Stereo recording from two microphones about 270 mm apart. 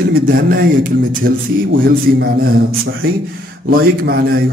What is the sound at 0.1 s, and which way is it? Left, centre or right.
A man's voice, right.